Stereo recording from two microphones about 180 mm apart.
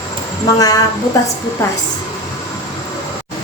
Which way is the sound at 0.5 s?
20° left (ahead or behind).